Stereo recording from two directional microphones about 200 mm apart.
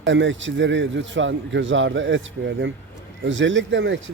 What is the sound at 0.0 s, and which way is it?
A man's voice, 70° right (ahead or behind).